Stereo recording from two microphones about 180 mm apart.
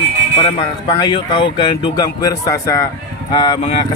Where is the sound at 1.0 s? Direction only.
25° left (ahead or behind).